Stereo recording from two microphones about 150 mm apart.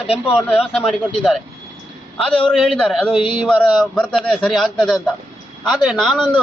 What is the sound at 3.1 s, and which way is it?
Speech, 35° left (ahead or behind).